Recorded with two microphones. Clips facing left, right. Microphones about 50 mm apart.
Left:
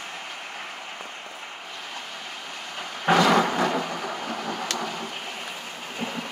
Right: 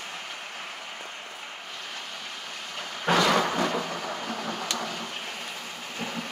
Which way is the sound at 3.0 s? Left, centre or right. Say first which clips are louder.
Left 3 dB; left.